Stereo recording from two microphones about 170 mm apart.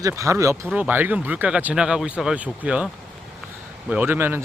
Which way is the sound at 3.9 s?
10° right (ahead or behind).